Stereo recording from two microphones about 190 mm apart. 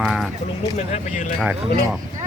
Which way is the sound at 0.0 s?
Centre (ahead or behind).